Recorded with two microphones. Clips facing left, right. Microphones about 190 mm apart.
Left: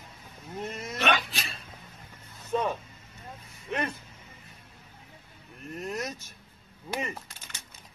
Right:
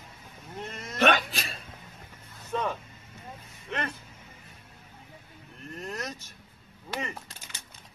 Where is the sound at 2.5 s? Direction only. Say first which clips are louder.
Left 2 dB; 10° left (ahead or behind).